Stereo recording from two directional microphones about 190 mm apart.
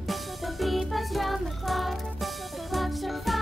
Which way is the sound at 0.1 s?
Centre (ahead or behind).